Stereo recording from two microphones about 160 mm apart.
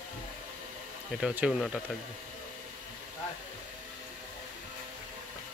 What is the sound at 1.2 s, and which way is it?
Speech, 5° right (ahead or behind).